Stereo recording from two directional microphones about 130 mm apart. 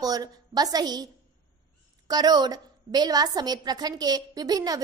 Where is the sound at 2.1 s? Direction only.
30° right (ahead or behind).